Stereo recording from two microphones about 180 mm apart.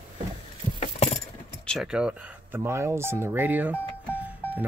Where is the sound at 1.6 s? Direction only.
Centre (ahead or behind).